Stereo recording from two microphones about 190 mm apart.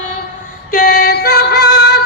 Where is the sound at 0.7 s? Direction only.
50° left (ahead or behind).